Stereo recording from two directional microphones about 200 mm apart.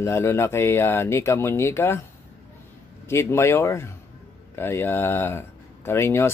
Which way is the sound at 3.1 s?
15° left (ahead or behind).